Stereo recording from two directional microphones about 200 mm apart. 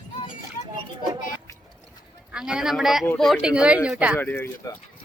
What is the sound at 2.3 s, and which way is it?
A man's voice, 5° right (ahead or behind).